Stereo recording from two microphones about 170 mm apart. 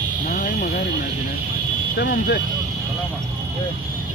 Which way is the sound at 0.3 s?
55° left (ahead or behind).